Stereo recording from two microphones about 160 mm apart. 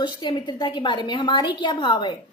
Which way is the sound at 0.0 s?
30° left (ahead or behind).